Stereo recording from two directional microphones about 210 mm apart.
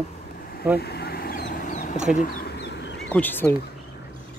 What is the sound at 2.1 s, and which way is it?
Duck, 45° left (ahead or behind).